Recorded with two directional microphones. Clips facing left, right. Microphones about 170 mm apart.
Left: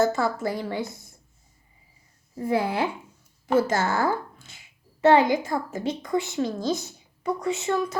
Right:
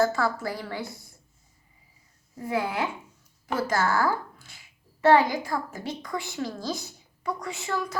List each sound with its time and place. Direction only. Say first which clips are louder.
0.0 s a woman's voice: left 2 dB; 20° left (ahead or behind)
2.5 s a woman's voice: left 3 dB; 30° left (ahead or behind)